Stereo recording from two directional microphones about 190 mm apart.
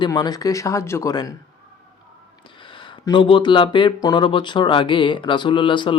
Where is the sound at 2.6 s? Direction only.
25° left (ahead or behind).